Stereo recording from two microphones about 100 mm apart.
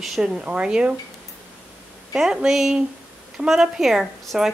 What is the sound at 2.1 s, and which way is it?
A woman's voice, 5° right (ahead or behind).